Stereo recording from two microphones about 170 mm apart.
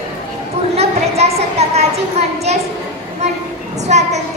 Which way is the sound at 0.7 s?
40° right (ahead or behind).